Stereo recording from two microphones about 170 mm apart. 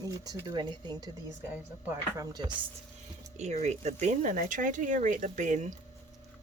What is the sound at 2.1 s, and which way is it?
Speech, 25° right (ahead or behind).